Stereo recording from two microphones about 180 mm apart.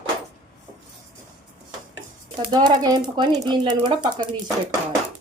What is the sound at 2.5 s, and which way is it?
A woman's voice, 25° right (ahead or behind).